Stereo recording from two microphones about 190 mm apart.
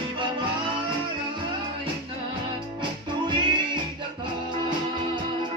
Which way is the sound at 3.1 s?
25° right (ahead or behind).